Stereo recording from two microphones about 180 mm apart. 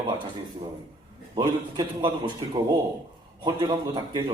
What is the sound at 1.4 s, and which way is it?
Speech, 20° right (ahead or behind).